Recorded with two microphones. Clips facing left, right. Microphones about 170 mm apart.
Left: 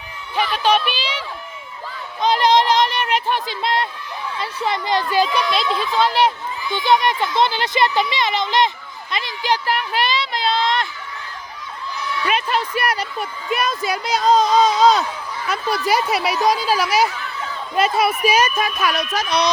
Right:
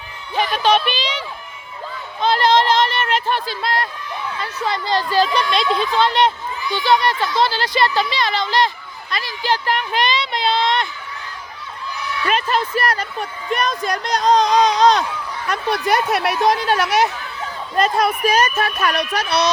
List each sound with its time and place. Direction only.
0.5 s speech: 10° left (ahead or behind)
2.2 s a sound: 15° left (ahead or behind)
4.4 s speech: 20° left (ahead or behind)
6.7 s speech: 20° left (ahead or behind); by 10.8 s centre (ahead or behind)
12.2 s a woman's voice: 10° left (ahead or behind)